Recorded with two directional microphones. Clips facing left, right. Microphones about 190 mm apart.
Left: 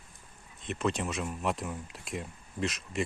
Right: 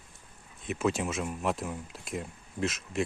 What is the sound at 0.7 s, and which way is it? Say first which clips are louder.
Speech: right 2 dB; 5° right (ahead or behind).